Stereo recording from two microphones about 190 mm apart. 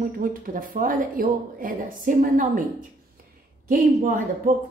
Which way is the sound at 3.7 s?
45° right (ahead or behind).